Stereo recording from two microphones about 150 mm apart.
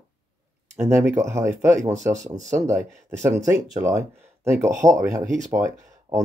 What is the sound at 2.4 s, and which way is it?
Speech, 20° right (ahead or behind).